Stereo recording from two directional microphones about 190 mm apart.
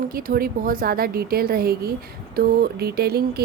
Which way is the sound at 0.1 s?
50° right (ahead or behind).